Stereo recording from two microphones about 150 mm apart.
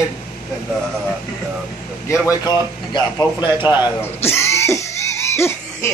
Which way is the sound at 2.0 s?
25° left (ahead or behind).